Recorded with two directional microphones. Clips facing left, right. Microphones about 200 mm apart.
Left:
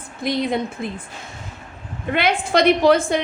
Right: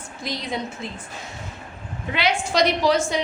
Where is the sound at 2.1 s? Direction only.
55° left (ahead or behind).